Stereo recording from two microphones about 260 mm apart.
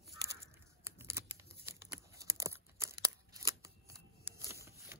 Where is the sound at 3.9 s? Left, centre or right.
Centre.